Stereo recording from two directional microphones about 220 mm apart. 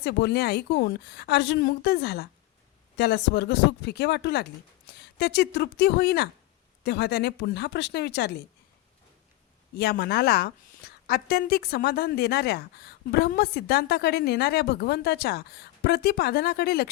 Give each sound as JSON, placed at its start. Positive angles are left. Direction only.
{"t": 0.0, "sound": "a woman's voice", "side_deg": 50}
{"t": 9.7, "sound": "a woman's voice", "side_deg": 45}